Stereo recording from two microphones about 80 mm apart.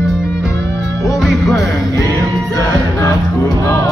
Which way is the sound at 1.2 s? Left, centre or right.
Centre.